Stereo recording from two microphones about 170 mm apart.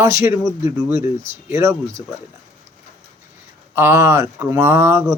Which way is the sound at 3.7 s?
15° right (ahead or behind).